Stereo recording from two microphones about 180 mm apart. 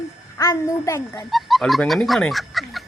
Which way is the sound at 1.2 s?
Centre (ahead or behind).